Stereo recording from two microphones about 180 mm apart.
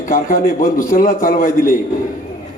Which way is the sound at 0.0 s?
50° left (ahead or behind).